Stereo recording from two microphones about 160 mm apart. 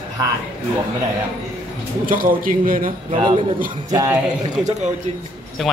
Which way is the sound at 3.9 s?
20° right (ahead or behind).